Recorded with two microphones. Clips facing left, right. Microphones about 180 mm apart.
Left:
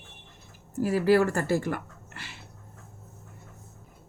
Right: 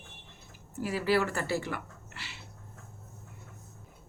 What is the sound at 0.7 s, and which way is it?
Speech, 45° left (ahead or behind).